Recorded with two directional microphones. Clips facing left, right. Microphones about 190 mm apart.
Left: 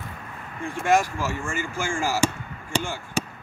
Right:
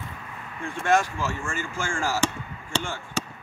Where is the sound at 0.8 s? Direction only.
10° left (ahead or behind).